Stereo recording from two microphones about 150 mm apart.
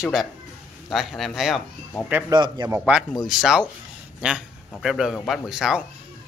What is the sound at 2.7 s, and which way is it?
A man's voice, 10° right (ahead or behind).